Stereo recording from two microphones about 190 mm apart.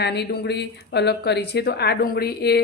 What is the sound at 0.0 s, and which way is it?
Speech, 60° left (ahead or behind).